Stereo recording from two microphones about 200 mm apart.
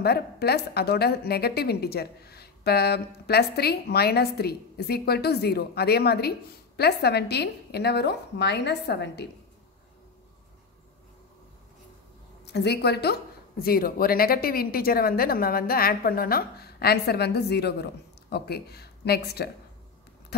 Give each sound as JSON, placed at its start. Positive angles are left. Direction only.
{"t": 0.0, "sound": "a woman's voice", "side_deg": 50}
{"t": 12.4, "sound": "a woman's voice", "side_deg": 55}